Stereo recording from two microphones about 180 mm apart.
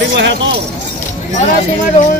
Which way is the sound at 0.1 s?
80° right.